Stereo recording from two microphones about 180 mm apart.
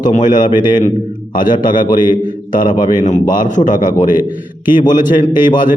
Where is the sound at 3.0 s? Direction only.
45° left (ahead or behind).